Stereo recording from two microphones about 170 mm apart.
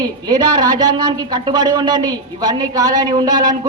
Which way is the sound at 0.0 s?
25° right (ahead or behind).